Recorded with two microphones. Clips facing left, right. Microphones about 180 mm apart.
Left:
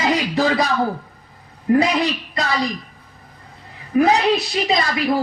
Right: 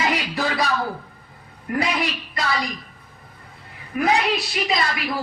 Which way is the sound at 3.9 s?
30° left (ahead or behind).